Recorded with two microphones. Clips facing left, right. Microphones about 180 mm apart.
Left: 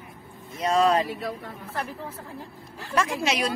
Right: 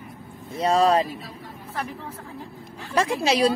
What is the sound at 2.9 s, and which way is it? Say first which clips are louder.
Speech: right 4 dB; 30° right (ahead or behind).